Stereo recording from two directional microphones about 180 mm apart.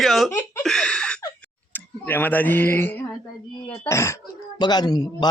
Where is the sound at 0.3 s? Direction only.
10° left (ahead or behind).